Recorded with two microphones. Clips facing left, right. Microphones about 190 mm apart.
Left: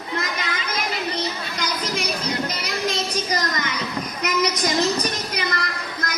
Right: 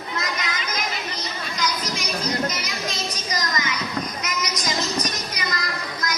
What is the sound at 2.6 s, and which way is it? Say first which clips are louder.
Child singing: left 4 dB; 60° left (ahead or behind).